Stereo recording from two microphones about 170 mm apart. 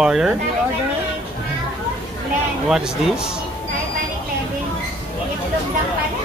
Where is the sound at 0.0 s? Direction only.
5° right (ahead or behind).